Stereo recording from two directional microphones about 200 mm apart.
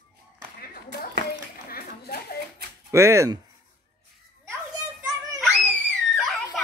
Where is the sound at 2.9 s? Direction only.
15° right (ahead or behind).